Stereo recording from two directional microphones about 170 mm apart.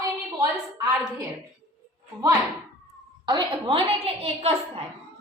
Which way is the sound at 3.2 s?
30° right (ahead or behind).